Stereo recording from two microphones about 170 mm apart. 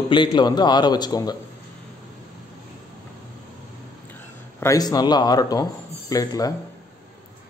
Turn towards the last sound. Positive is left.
turn(degrees=20)  # may be behind; listen again after turning